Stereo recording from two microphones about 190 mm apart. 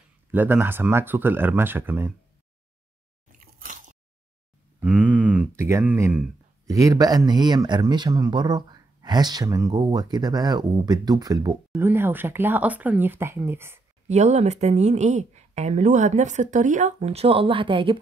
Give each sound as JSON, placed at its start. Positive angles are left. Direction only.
{"t": 0.3, "sound": "speech", "side_deg": -10}
{"t": 3.3, "sound": "squish", "side_deg": -45}
{"t": 4.7, "sound": "speech", "side_deg": -10}
{"t": 14.0, "sound": "speech", "side_deg": -35}